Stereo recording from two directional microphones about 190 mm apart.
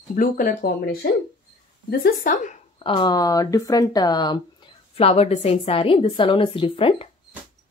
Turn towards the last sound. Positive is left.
turn(degrees=30)  # may be behind; listen again after turning